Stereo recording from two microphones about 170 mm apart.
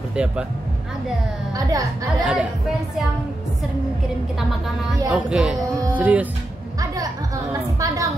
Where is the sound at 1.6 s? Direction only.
20° right (ahead or behind).